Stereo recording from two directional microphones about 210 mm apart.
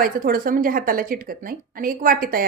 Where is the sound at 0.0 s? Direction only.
40° right (ahead or behind).